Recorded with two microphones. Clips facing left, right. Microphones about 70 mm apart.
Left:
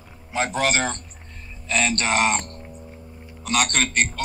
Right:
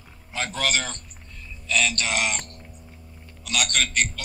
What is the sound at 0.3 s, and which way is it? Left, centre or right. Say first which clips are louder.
A man's voice: left 5 dB; left.